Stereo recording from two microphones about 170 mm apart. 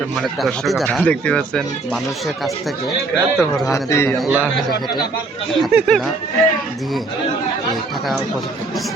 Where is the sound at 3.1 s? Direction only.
15° left (ahead or behind).